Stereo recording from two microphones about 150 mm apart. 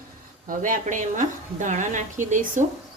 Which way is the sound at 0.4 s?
60° right (ahead or behind).